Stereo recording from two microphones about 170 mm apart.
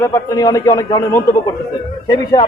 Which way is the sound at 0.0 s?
20° left (ahead or behind).